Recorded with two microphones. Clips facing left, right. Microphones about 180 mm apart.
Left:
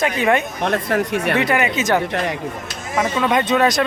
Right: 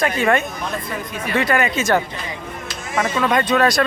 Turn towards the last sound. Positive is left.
turn(degrees=20)  # may be behind; listen again after turning